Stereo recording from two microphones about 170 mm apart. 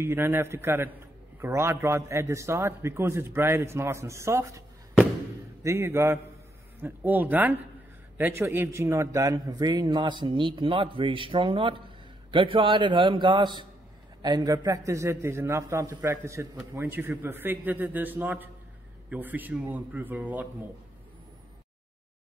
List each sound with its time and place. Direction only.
0.0 s a man's voice: 15° right (ahead or behind)